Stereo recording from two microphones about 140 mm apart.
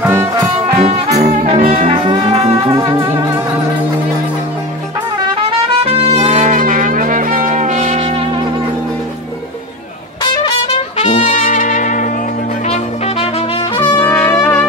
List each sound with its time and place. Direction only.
0.0 s music: 20° right (ahead or behind)
0.7 s music: 50° right (ahead or behind)
1.7 s music: 40° right (ahead or behind)
2.5 s music: 20° right (ahead or behind)
5.9 s music: 50° right (ahead or behind)
10.2 s trumpet: 35° left (ahead or behind)
11.0 s brass instrument: 60° left (ahead or behind)
12.6 s music: 45° left (ahead or behind)
14.0 s brass instrument: 15° left (ahead or behind)